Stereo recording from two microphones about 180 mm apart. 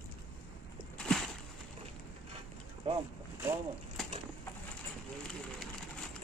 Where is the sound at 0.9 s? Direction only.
5° left (ahead or behind).